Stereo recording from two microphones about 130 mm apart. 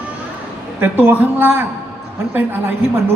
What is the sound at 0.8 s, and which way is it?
Speech, 15° right (ahead or behind).